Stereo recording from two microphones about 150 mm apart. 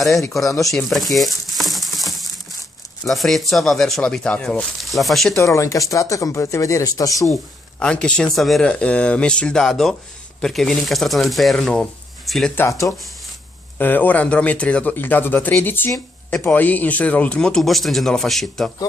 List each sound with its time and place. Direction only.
0.7 s a sound: 5° left (ahead or behind)
3.0 s speech: centre (ahead or behind)
5.3 s speech: 20° left (ahead or behind)
7.8 s speech: 5° left (ahead or behind)
12.5 s speech: 20° left (ahead or behind); by 18.7 s centre (ahead or behind)